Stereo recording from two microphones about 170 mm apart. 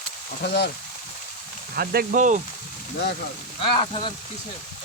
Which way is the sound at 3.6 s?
30° left (ahead or behind).